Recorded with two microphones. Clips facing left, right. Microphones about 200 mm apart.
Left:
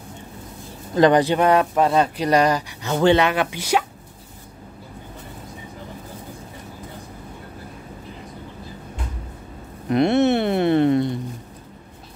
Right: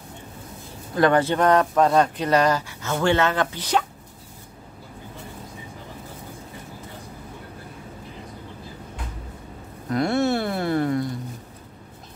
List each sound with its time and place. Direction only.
0.9 s speech: 20° left (ahead or behind)
9.8 s speech: 20° left (ahead or behind)